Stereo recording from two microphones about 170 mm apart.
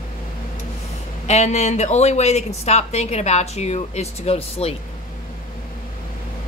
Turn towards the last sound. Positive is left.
turn(degrees=35)  # may be behind; listen again after turning